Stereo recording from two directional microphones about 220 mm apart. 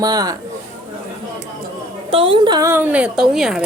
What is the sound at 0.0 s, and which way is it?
Speech, 15° right (ahead or behind).